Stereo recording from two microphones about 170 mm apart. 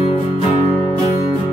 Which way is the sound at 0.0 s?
35° left (ahead or behind).